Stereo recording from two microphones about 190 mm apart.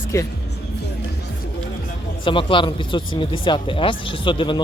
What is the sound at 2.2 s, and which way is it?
Speech, 25° left (ahead or behind).